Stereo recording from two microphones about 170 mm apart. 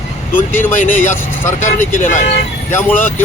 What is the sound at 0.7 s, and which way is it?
Speech, 50° left (ahead or behind).